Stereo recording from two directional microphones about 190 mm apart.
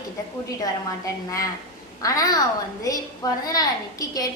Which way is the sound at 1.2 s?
15° left (ahead or behind).